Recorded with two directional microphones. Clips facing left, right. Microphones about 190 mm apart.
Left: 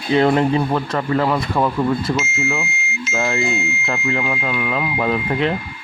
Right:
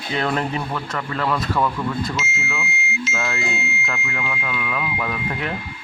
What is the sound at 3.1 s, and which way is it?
Speech, 30° left (ahead or behind).